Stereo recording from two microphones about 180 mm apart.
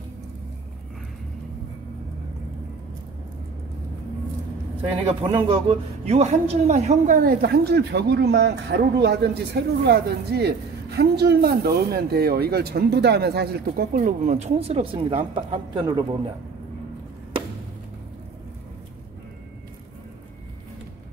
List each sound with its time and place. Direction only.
5.0 s speech: 30° right (ahead or behind); by 13.8 s 60° right (ahead or behind)
13.9 s speech: 45° right (ahead or behind); by 16.2 s 25° right (ahead or behind)